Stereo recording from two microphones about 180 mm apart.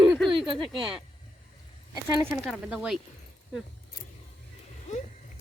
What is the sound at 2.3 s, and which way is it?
Speech, 5° right (ahead or behind).